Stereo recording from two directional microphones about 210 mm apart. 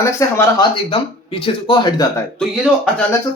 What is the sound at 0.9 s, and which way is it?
Speech, 25° left (ahead or behind).